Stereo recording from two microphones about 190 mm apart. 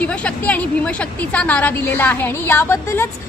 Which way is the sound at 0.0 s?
5° left (ahead or behind).